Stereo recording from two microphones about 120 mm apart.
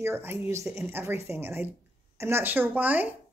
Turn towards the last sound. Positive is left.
turn(degrees=-15)  # may be behind; listen again after turning